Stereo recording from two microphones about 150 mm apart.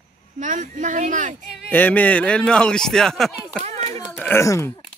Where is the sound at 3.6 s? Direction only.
45° right (ahead or behind).